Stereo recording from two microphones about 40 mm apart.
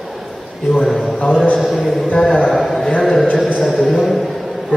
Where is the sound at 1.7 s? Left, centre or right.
Centre.